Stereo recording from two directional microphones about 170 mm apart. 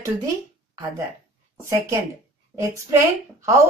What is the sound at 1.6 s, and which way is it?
A woman's voice, 15° right (ahead or behind).